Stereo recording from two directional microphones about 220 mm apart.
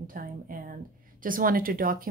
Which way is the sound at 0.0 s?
40° right (ahead or behind).